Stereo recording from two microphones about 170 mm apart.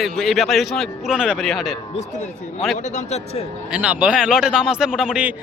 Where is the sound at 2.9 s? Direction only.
40° left (ahead or behind).